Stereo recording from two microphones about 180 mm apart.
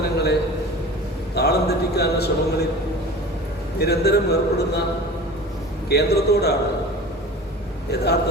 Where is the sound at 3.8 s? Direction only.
60° left (ahead or behind).